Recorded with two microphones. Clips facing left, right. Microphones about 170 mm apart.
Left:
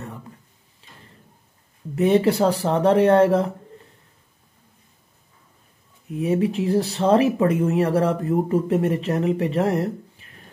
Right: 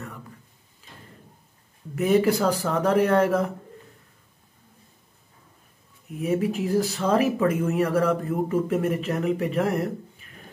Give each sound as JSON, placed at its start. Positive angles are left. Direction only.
{"t": 2.0, "sound": "speech", "side_deg": 30}
{"t": 6.2, "sound": "speech", "side_deg": 30}